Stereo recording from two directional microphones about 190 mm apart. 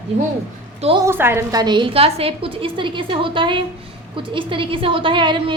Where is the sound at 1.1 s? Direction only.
10° right (ahead or behind).